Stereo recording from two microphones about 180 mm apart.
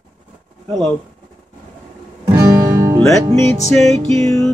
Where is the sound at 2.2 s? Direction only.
20° right (ahead or behind).